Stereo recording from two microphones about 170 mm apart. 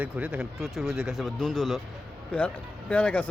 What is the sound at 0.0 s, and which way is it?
Speech, 5° right (ahead or behind).